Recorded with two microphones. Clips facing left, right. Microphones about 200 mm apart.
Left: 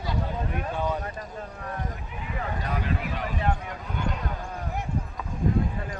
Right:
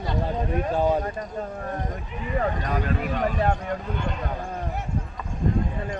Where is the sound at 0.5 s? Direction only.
35° right (ahead or behind).